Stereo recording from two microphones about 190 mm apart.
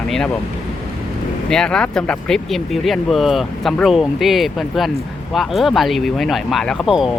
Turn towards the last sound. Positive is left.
turn(degrees=0)  # may be behind; listen again after turning